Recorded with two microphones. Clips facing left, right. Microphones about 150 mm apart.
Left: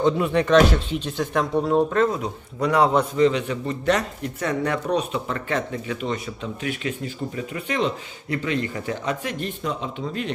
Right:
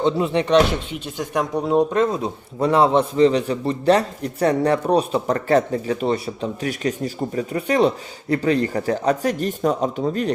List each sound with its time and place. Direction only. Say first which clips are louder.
0.0 s speech: right 1 dB; 25° right (ahead or behind)
2.6 s a man's voice: right 3 dB; 30° right (ahead or behind)